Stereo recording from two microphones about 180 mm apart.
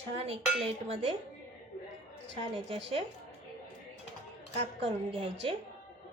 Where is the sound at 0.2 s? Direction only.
35° right (ahead or behind).